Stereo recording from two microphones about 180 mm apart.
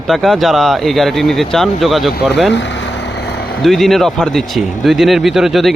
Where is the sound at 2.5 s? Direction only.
90° left; by 3.5 s 65° left (ahead or behind).